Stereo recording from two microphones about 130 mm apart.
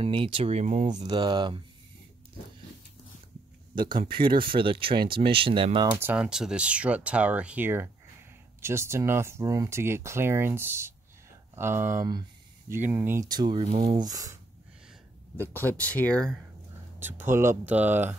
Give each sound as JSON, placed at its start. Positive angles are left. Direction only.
{"t": 0.0, "sound": "speech", "side_deg": -45}
{"t": 1.1, "sound": "speech", "side_deg": -35}
{"t": 3.7, "sound": "speech", "side_deg": -35}
{"t": 5.9, "sound": "speech", "side_deg": -15}
{"t": 13.3, "sound": "speech", "side_deg": -30}
{"t": 15.5, "sound": "speech", "side_deg": 10}
{"t": 17.0, "sound": "speech", "side_deg": -15}